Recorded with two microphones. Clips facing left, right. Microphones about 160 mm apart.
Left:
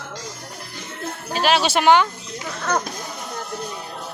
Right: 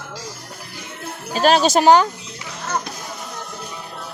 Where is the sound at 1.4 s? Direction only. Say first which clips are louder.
Right 4 dB; 40° right (ahead or behind).